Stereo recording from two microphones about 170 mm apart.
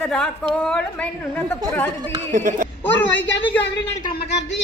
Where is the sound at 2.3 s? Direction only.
50° right (ahead or behind).